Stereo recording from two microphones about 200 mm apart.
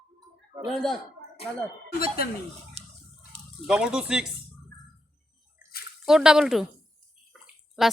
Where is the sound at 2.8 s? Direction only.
30° right (ahead or behind).